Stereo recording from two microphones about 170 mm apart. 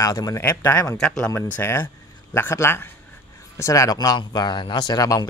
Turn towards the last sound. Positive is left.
turn(degrees=20)  # may be behind; listen again after turning